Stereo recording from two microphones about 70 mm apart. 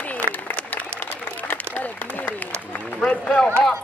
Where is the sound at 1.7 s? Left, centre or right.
Left.